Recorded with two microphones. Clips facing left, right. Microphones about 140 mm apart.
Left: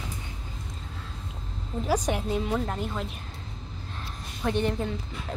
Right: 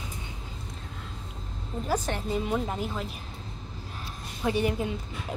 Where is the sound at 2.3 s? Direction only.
5° right (ahead or behind).